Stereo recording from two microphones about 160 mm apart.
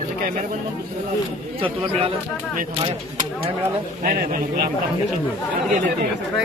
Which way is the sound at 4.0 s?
60° right (ahead or behind).